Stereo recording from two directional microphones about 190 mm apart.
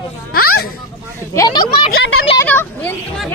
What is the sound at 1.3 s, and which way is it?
Speech, 20° left (ahead or behind).